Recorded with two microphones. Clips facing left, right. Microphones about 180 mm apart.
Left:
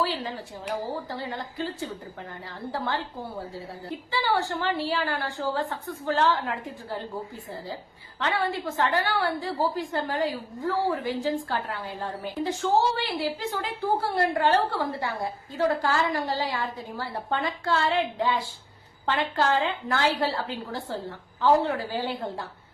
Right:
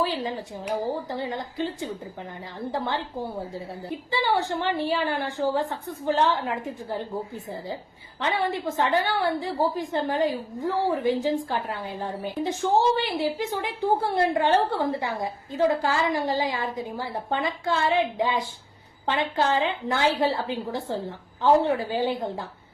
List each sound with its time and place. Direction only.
0.0 s a woman's voice: 15° right (ahead or behind)
8.2 s a woman's voice: 20° right (ahead or behind)